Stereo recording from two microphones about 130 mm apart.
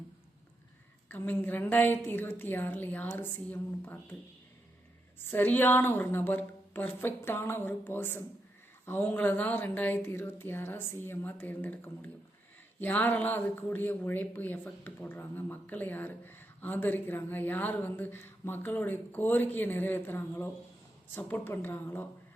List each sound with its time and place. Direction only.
1.0 s speech: 15° left (ahead or behind)
5.2 s speech: 15° left (ahead or behind)